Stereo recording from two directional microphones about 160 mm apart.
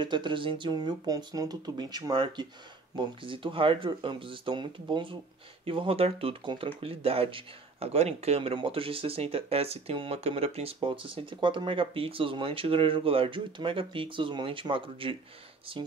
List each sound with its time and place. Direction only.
0.0 s speech: 30° right (ahead or behind)